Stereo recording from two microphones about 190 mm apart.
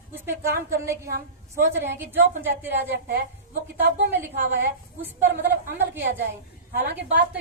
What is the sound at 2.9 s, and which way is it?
Speech, 60° right (ahead or behind).